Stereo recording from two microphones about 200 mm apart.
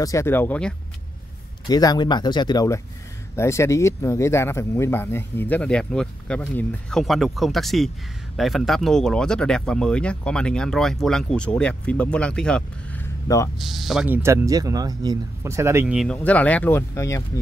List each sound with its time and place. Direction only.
0.0 s speech: 15° left (ahead or behind)
1.7 s speech: 20° left (ahead or behind)